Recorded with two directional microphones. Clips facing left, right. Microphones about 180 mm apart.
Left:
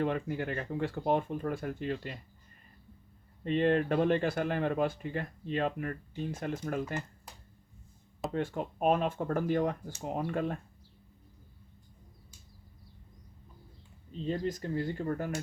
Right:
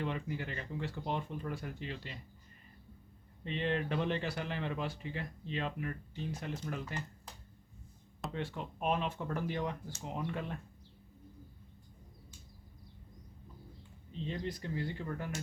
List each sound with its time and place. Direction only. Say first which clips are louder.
0.0 s speech: left 6 dB; 50° left (ahead or behind)
3.4 s speech: left 8 dB; 50° left (ahead or behind)
8.3 s speech: left 7 dB; 50° left (ahead or behind)
14.3 s speech: left 7 dB; 45° left (ahead or behind)